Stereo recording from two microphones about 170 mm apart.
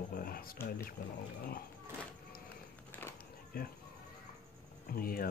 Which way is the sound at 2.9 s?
15° left (ahead or behind).